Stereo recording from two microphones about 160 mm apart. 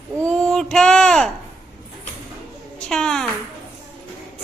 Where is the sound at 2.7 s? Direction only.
5° left (ahead or behind).